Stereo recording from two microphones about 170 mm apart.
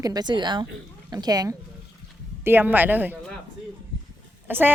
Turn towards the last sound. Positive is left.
turn(degrees=-10)  # may be behind; listen again after turning